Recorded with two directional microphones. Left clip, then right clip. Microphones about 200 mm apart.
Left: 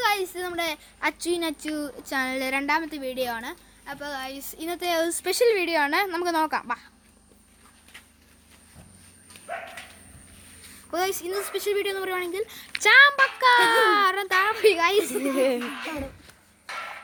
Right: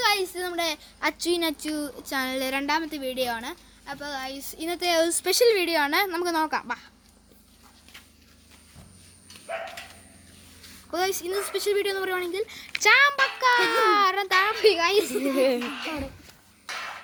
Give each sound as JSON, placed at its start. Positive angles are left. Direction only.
{"t": 0.0, "sound": "a child's voice", "side_deg": 5}
{"t": 9.5, "sound": "dog", "side_deg": 45}
{"t": 10.9, "sound": "speech", "side_deg": 10}